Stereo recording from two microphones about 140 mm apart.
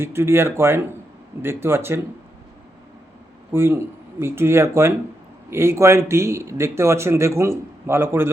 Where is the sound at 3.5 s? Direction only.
15° right (ahead or behind).